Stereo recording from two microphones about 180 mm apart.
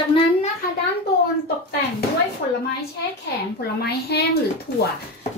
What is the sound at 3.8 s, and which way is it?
Speech, 65° left (ahead or behind).